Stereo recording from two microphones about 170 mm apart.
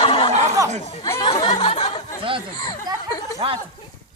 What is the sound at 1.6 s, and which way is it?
Snicker, 40° left (ahead or behind).